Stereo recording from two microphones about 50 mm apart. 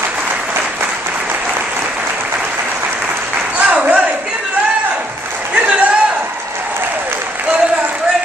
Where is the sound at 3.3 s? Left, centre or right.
Right.